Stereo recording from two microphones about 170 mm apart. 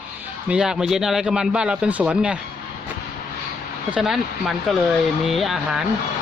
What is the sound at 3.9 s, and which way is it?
Speech, 5° right (ahead or behind).